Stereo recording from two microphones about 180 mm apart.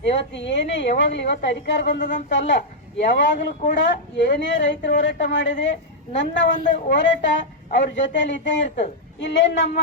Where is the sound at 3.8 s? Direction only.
85° left.